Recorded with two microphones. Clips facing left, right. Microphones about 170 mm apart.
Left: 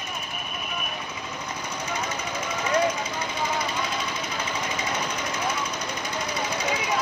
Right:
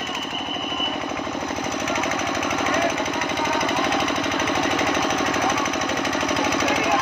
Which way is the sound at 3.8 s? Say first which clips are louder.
Right 8 dB; 70° right (ahead or behind).